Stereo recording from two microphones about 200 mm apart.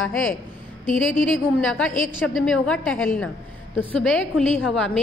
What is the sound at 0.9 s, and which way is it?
A woman's voice, 5° left (ahead or behind).